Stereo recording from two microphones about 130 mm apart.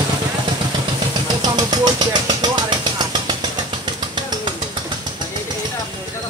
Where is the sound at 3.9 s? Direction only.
35° right (ahead or behind).